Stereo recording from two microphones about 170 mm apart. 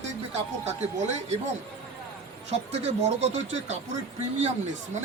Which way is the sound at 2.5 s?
40° right (ahead or behind).